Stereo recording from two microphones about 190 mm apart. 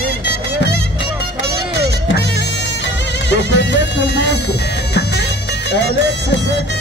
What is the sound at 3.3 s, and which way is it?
Music, 70° left (ahead or behind).